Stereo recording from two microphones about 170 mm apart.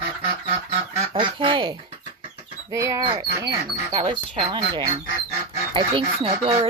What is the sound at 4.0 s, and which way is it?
Speech, 30° right (ahead or behind).